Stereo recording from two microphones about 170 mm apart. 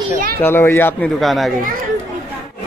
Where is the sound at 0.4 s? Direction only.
15° left (ahead or behind).